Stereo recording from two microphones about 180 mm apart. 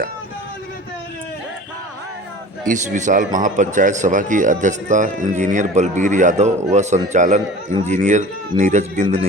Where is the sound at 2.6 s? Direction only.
45° right (ahead or behind).